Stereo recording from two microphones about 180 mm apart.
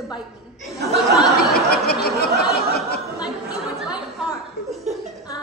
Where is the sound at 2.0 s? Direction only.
60° left (ahead or behind).